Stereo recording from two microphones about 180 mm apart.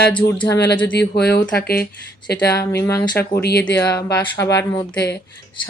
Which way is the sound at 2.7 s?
15° left (ahead or behind).